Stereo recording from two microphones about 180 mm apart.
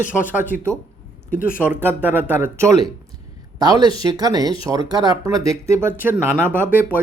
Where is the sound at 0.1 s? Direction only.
10° right (ahead or behind).